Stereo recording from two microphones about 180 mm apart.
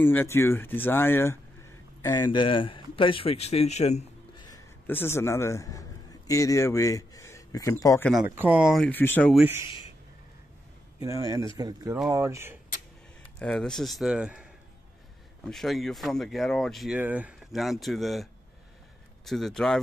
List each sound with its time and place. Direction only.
0.0 s a man's voice: 10° left (ahead or behind); by 4.0 s 35° left (ahead or behind)
4.5 s a man's voice: 10° left (ahead or behind)
8.1 s speech: 5° right (ahead or behind); by 9.3 s 10° left (ahead or behind)
9.3 s speech: 5° right (ahead or behind)
11.1 s speech: 20° right (ahead or behind)
13.4 s speech: 5° left (ahead or behind)